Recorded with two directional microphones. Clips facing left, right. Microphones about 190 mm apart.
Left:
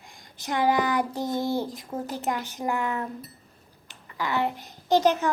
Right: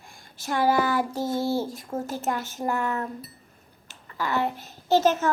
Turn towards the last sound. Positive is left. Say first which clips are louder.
# even
turn(degrees=15)  # may be behind; listen again after turning